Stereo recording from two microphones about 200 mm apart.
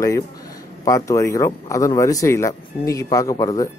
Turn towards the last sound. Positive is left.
turn(degrees=15)  # may be behind; listen again after turning